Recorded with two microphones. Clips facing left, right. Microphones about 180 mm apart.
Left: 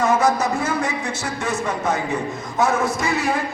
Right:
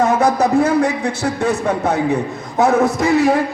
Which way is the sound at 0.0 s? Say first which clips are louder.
Right 4 dB; 60° right (ahead or behind).